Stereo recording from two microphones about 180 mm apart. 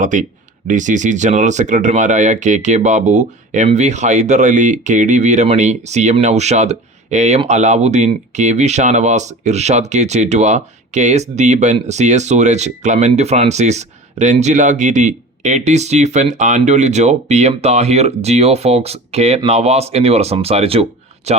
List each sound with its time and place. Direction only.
0.0 s speech: 45° right (ahead or behind)